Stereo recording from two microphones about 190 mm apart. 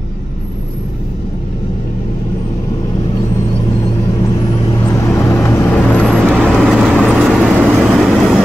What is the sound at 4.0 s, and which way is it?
Vehicle, 20° left (ahead or behind).